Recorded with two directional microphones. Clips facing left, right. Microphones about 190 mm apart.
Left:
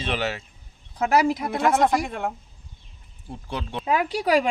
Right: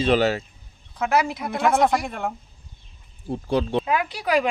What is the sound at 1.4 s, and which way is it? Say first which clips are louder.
Speech: right 1 dB; 15° left (ahead or behind).